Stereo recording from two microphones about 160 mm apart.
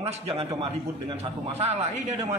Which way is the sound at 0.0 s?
40° right (ahead or behind).